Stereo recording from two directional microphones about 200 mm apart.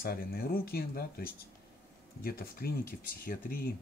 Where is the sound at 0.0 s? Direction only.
50° left (ahead or behind).